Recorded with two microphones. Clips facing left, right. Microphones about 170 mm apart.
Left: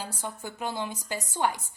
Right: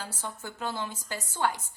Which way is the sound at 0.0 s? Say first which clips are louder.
Left 2 dB; 15° left (ahead or behind).